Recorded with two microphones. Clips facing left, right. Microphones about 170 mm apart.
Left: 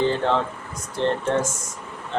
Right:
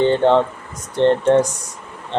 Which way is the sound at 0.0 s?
30° right (ahead or behind).